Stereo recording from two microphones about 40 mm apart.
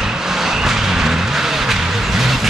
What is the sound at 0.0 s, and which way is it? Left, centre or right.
Vehicle, centre.